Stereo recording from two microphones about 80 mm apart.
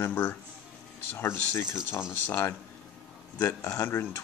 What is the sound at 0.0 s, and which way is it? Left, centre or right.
Speech, left.